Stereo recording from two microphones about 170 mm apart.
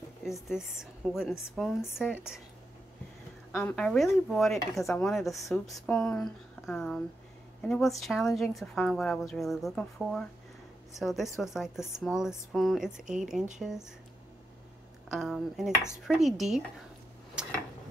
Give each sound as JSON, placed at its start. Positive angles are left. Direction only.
{"t": 0.2, "sound": "a woman's voice", "side_deg": 0}
{"t": 3.5, "sound": "a woman's voice", "side_deg": 5}
{"t": 13.0, "sound": "a woman's voice", "side_deg": -45}
{"t": 13.6, "sound": "a woman's voice", "side_deg": -5}
{"t": 15.0, "sound": "a woman's voice", "side_deg": 0}
{"t": 17.4, "sound": "tick-tock", "side_deg": -5}